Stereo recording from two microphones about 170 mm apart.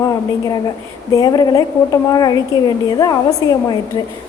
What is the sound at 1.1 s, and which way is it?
A woman's voice, 20° left (ahead or behind).